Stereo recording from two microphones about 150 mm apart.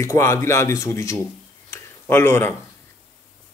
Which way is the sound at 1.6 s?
15° left (ahead or behind).